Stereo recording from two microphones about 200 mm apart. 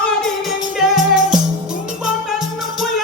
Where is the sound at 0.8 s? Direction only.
Centre (ahead or behind).